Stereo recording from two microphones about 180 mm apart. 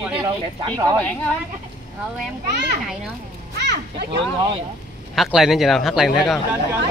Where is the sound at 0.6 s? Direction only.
20° right (ahead or behind).